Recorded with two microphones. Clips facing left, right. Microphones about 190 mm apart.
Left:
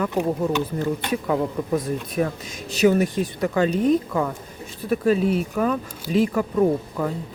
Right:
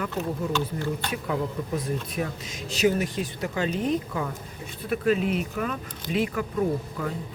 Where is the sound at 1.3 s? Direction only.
45° left (ahead or behind).